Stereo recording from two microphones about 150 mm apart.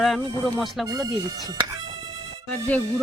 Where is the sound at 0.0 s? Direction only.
Centre (ahead or behind).